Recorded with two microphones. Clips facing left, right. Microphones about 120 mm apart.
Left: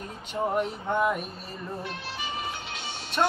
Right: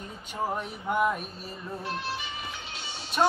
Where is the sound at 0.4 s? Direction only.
5° right (ahead or behind).